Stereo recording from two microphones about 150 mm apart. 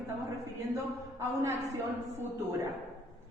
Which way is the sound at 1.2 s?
15° right (ahead or behind).